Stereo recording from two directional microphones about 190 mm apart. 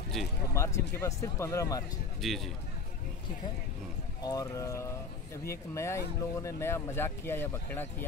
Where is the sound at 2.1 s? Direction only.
Centre (ahead or behind).